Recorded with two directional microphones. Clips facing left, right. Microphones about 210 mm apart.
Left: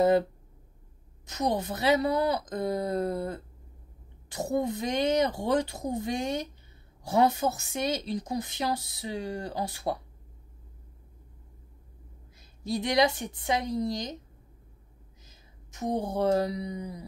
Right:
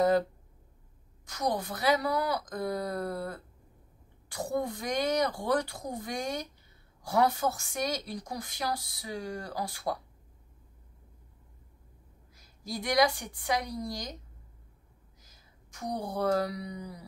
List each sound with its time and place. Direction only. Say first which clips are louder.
1.2 s a woman's voice: left 3 dB; 25° left (ahead or behind)
12.4 s a woman's voice: left 7 dB; 25° left (ahead or behind)
15.2 s speech: left 4 dB; 20° left (ahead or behind)